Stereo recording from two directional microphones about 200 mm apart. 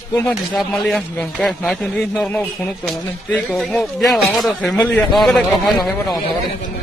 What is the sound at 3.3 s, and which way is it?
Speech, centre (ahead or behind).